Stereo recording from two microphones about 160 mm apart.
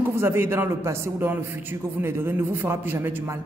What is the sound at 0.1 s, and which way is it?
A man's voice, 15° right (ahead or behind).